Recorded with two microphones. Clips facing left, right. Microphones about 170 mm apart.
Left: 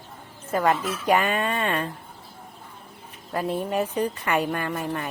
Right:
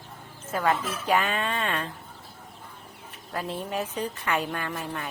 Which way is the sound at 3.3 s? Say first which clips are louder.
Left 5 dB; 50° left (ahead or behind).